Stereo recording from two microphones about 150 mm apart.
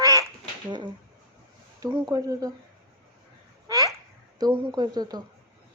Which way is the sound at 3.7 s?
25° right (ahead or behind).